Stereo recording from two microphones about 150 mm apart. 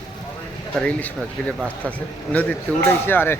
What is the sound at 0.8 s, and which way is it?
Speech, 10° left (ahead or behind).